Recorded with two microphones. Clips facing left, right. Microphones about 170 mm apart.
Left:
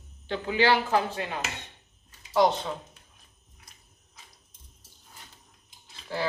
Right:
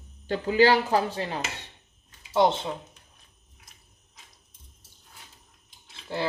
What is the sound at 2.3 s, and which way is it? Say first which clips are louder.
Speech: right 1 dB; 25° right (ahead or behind).